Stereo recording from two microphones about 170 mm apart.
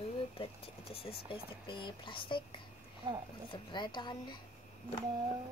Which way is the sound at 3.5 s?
25° left (ahead or behind).